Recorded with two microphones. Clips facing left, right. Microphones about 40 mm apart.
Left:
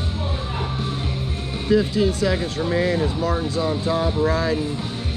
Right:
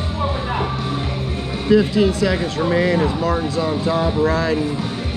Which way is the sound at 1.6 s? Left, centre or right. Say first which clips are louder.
Right 4 dB; right.